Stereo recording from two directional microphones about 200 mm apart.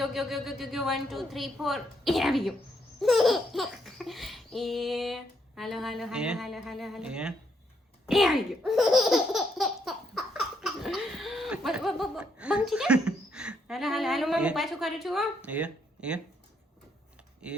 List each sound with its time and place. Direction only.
0.0 s laughter: centre (ahead or behind)